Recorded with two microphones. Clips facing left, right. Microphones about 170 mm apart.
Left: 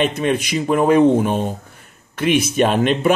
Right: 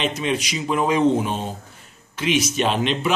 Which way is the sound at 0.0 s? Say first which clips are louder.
Left 5 dB; 50° left (ahead or behind).